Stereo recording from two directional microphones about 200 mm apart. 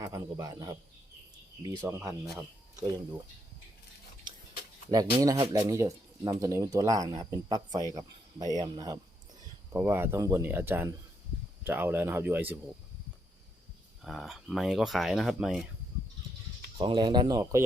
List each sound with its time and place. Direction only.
0.0 s speech: 20° right (ahead or behind)
2.0 s speech: centre (ahead or behind)
4.9 s speech: 20° right (ahead or behind)
14.0 s speech: centre (ahead or behind)
16.7 s speech: 25° right (ahead or behind)